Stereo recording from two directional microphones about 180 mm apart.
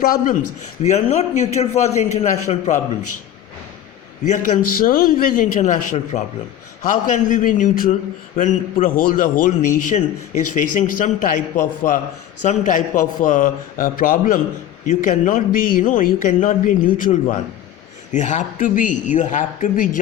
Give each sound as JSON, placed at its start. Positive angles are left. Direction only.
{"t": 0.0, "sound": "a man's voice", "side_deg": 55}
{"t": 0.8, "sound": "a man's voice", "side_deg": 40}
{"t": 4.3, "sound": "a man's voice", "side_deg": 45}